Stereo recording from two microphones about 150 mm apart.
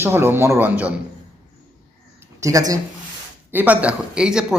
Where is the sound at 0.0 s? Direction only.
15° right (ahead or behind).